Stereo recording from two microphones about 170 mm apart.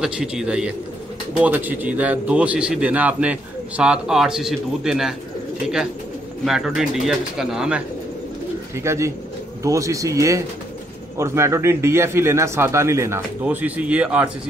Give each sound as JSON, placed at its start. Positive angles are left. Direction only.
{"t": 0.0, "sound": "a man's voice", "side_deg": -5}
{"t": 6.4, "sound": "speech", "side_deg": 0}
{"t": 8.7, "sound": "a man's voice", "side_deg": -15}